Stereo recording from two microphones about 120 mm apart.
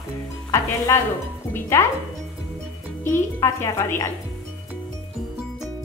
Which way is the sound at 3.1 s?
20° left (ahead or behind).